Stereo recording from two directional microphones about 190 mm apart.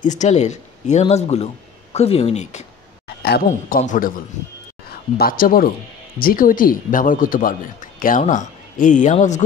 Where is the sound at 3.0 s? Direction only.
55° left (ahead or behind).